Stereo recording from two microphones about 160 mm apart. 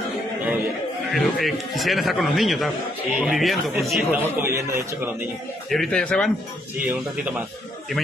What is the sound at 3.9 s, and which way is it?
Speech, 10° right (ahead or behind).